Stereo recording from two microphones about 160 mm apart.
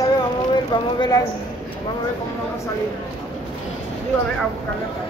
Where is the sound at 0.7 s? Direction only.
30° left (ahead or behind).